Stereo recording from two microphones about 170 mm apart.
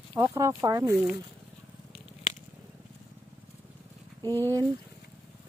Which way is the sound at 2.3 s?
40° left (ahead or behind).